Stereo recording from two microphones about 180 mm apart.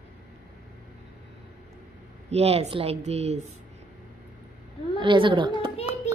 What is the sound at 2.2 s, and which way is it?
Speech, 35° right (ahead or behind).